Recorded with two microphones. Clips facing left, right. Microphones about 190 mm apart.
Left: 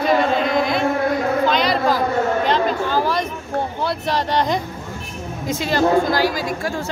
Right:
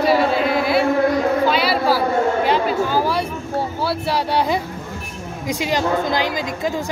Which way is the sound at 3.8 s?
10° right (ahead or behind).